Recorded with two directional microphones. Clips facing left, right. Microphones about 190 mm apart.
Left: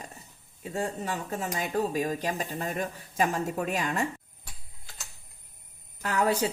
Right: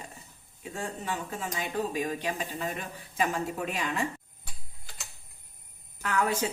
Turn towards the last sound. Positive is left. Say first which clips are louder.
# left 2 dB
turn(degrees=35)  # may be behind; listen again after turning